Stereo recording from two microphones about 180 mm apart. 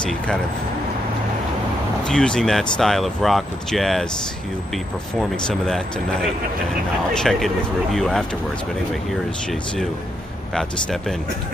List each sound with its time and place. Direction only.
2.0 s speech: 5° left (ahead or behind)
5.3 s speech: 5° left (ahead or behind)
7.2 s speech: centre (ahead or behind)
10.5 s speech: centre (ahead or behind)